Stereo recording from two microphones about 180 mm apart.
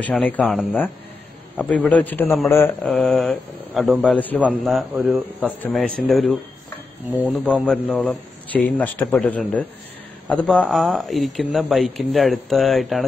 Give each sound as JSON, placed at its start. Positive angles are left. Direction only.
{"t": 0.0, "sound": "a man's voice", "side_deg": 10}
{"t": 1.6, "sound": "a man's voice", "side_deg": 5}
{"t": 4.9, "sound": "speech", "side_deg": -10}
{"t": 5.4, "sound": "speech", "side_deg": 5}